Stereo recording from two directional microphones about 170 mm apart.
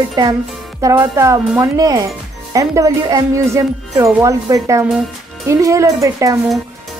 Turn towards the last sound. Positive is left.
turn(degrees=-20)  # may be behind; listen again after turning